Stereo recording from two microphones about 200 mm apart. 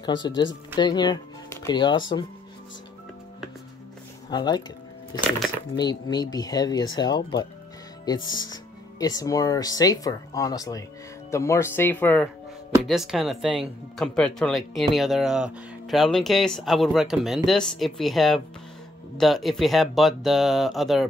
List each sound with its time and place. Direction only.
0.0 s speech: 20° left (ahead or behind)
4.3 s speech: 20° left (ahead or behind)
5.8 s speech: 20° left (ahead or behind); by 21.1 s centre (ahead or behind)